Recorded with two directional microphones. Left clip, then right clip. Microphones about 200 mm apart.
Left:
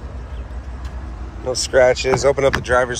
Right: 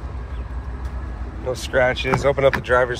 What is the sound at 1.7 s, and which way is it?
Speech, 25° left (ahead or behind).